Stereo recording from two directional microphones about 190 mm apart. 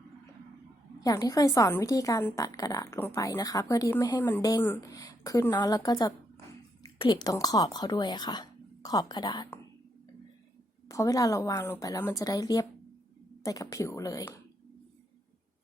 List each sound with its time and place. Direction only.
0.9 s a woman's voice: 20° left (ahead or behind)
10.8 s a woman's voice: 15° left (ahead or behind)